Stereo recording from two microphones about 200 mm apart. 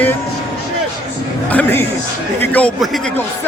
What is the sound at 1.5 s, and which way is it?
Speech, 10° left (ahead or behind).